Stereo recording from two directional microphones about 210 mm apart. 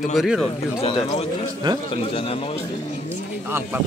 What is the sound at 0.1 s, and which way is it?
Speech, centre (ahead or behind).